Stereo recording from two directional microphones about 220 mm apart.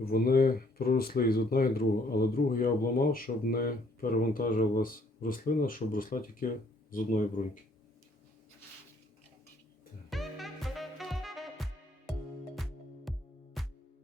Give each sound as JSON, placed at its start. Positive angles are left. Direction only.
{"t": 0.0, "sound": "speech", "side_deg": 45}
{"t": 10.1, "sound": "music", "side_deg": 0}